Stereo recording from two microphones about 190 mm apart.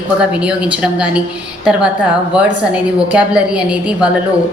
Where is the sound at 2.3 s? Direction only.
5° right (ahead or behind).